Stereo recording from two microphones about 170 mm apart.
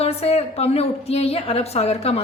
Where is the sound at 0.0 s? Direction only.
35° left (ahead or behind).